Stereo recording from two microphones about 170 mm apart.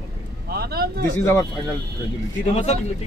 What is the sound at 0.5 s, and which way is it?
Speech, 65° right (ahead or behind).